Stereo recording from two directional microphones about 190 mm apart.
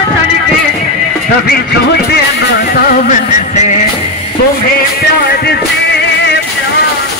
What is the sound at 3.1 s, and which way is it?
Music, 40° left (ahead or behind).